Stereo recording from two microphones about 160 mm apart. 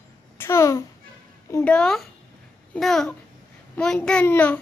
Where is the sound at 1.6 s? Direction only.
5° left (ahead or behind).